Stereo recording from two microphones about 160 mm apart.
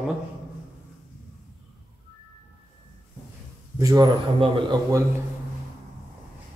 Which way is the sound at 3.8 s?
25° right (ahead or behind).